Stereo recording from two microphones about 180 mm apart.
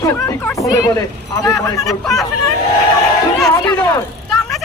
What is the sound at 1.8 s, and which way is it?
Speech, centre (ahead or behind).